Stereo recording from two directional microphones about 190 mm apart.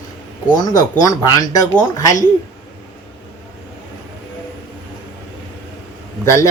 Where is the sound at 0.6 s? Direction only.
20° left (ahead or behind).